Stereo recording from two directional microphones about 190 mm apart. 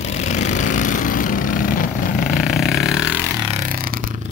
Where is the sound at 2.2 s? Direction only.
Centre (ahead or behind).